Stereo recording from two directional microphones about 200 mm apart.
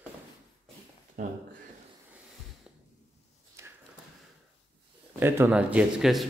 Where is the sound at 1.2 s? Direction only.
40° right (ahead or behind).